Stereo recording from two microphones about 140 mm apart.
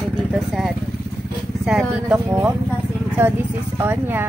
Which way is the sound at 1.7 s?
5° right (ahead or behind).